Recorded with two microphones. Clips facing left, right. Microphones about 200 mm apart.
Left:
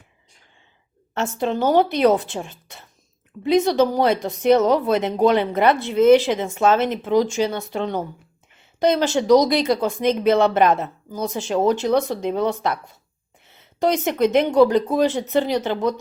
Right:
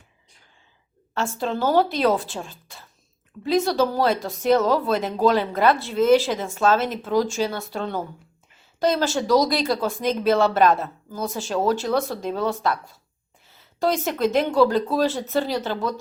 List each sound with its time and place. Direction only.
1.1 s speech: 20° left (ahead or behind)